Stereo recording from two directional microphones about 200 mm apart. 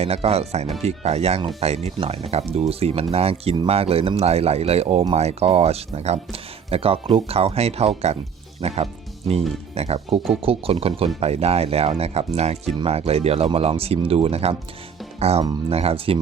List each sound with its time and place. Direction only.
0.0 s speech: 30° right (ahead or behind)